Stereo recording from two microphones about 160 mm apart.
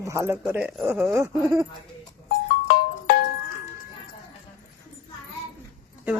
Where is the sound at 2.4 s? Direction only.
80° left.